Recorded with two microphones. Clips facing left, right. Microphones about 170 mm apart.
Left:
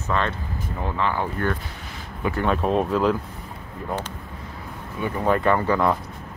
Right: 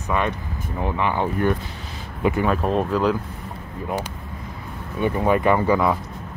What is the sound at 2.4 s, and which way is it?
Speech, centre (ahead or behind).